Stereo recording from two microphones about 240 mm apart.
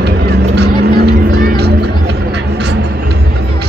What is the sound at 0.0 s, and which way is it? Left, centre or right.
Music, right.